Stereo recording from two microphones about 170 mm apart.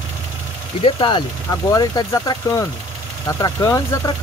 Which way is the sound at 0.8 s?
30° left (ahead or behind).